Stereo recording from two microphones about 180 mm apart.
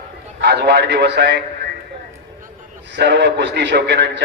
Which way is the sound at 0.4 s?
70° right (ahead or behind).